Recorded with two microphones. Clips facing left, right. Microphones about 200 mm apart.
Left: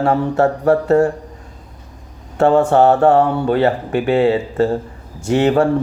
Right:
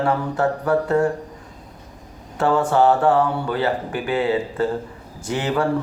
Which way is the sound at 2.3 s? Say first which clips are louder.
Left 6 dB; 25° left (ahead or behind).